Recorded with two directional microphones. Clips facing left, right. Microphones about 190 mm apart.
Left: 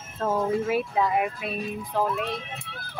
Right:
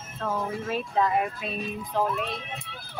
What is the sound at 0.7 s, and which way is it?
Speech, 10° left (ahead or behind).